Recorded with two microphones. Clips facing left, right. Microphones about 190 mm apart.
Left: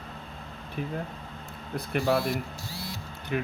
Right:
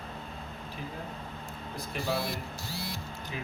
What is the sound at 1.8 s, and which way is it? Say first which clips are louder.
Speech: left 7 dB; 60° left (ahead or behind).